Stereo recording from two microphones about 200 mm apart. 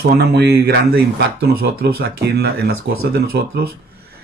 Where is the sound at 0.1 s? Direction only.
55° right (ahead or behind).